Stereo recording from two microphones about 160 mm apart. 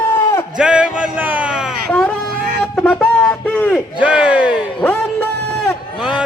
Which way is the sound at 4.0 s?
5° right (ahead or behind).